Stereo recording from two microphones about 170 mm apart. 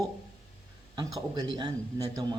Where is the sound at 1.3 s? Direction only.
25° right (ahead or behind).